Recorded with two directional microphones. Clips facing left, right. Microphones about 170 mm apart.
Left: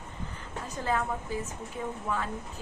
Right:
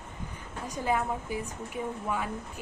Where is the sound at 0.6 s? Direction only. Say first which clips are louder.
Right 1 dB; 15° right (ahead or behind).